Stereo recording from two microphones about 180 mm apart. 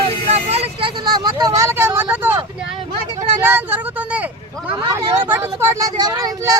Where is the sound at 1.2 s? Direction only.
20° right (ahead or behind).